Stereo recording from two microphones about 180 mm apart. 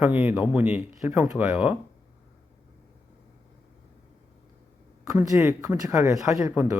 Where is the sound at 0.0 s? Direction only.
5° right (ahead or behind).